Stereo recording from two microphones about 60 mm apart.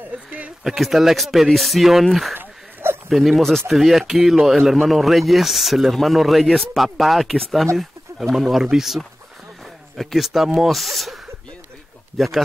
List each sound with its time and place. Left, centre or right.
0.1 s speech: right
0.7 s speech: centre
2.3 s a sound: right
3.1 s speech: centre